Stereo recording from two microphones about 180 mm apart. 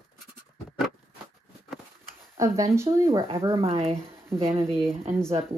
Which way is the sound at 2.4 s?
15° right (ahead or behind).